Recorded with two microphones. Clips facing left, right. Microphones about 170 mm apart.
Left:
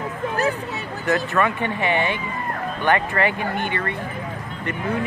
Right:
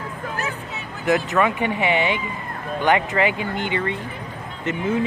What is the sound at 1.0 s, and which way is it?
Speech, 15° right (ahead or behind).